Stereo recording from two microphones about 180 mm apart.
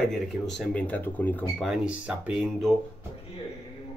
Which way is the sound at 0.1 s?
Centre (ahead or behind).